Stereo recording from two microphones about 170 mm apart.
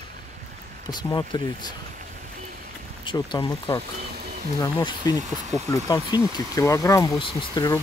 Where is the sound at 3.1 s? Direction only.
25° left (ahead or behind).